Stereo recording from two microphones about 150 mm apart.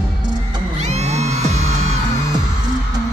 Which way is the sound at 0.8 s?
50° right (ahead or behind).